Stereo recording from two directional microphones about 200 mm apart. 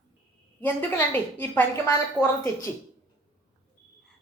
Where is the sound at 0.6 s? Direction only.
10° left (ahead or behind).